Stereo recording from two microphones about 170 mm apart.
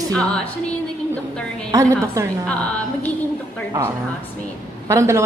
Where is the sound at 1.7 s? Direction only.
20° right (ahead or behind).